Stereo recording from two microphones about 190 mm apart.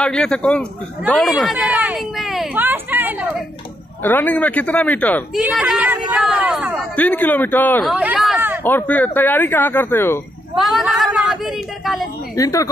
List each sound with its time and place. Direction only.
0.0 s speech: 5° left (ahead or behind)
4.0 s speech: 10° left (ahead or behind); by 6.8 s 10° right (ahead or behind)
7.0 s speech: 10° left (ahead or behind)
7.8 s chatter: 5° right (ahead or behind)
8.6 s speech: 10° left (ahead or behind)
10.5 s speech: centre (ahead or behind)
12.4 s speech: 15° left (ahead or behind)